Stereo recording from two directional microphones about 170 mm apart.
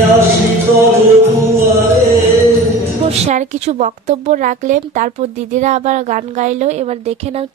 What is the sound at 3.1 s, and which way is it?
Speech, 40° right (ahead or behind).